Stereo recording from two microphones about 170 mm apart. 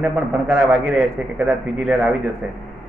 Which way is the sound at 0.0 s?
5° right (ahead or behind).